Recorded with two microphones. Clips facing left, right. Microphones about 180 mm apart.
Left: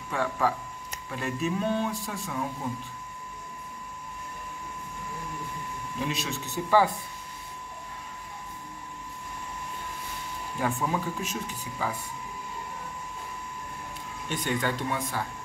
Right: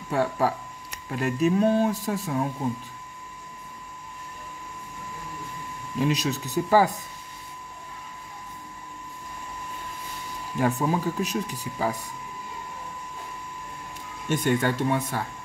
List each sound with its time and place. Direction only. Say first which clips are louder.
0.1 s speech: right 4 dB; 40° right (ahead or behind)
6.0 s speech: right 8 dB; 40° right (ahead or behind)
10.6 s speech: right 5 dB; 40° right (ahead or behind)
14.3 s speech: right 6 dB; 45° right (ahead or behind)